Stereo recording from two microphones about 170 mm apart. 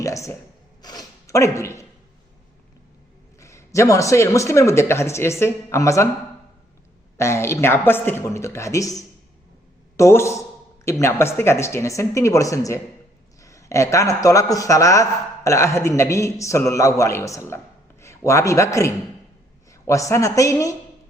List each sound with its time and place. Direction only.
0.0 s a sound: 20° left (ahead or behind)
3.4 s speech: 15° left (ahead or behind)
7.2 s a man's voice: 15° left (ahead or behind)